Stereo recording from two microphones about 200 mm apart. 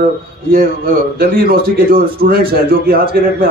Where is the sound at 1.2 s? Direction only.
50° right (ahead or behind).